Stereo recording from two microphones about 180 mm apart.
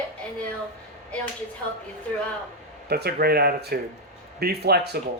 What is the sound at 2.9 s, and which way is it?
Speech, 60° right (ahead or behind).